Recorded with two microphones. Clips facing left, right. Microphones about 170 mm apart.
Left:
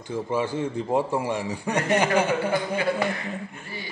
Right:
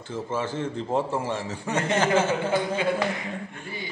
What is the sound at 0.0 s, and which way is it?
A man's voice, 15° left (ahead or behind).